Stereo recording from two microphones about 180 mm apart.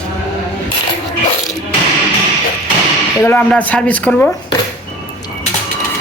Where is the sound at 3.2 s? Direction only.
10° left (ahead or behind).